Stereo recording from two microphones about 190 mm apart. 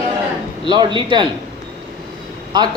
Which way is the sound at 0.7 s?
25° right (ahead or behind).